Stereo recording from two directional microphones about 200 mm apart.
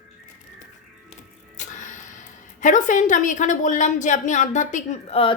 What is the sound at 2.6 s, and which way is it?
Female singing, 40° left (ahead or behind).